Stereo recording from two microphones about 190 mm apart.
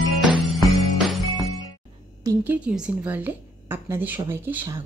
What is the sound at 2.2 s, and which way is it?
A woman's voice, 10° right (ahead or behind).